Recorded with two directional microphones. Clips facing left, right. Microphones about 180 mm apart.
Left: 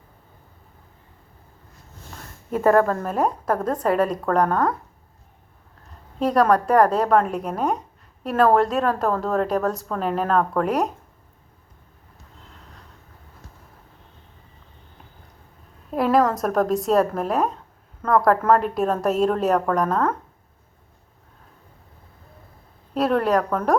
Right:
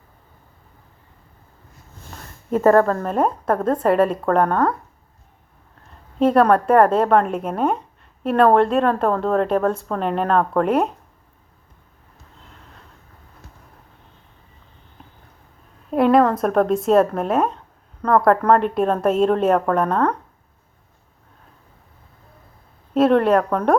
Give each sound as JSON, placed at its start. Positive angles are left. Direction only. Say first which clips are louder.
{"t": 2.5, "sound": "a woman's voice", "louder": "right 3 dB", "side_deg": 5}
{"t": 6.1, "sound": "a woman's voice", "louder": "right 3 dB", "side_deg": 0}
{"t": 16.0, "sound": "a woman's voice", "louder": "right 4 dB", "side_deg": 0}
{"t": 23.0, "sound": "a woman's voice", "louder": "right 5 dB", "side_deg": 0}